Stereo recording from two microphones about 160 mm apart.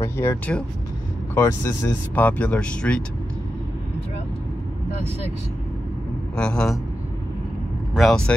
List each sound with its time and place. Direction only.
0.0 s vehicle: 20° left (ahead or behind)
1.3 s speech: 15° left (ahead or behind)
6.3 s speech: 5° left (ahead or behind)
7.9 s speech: centre (ahead or behind)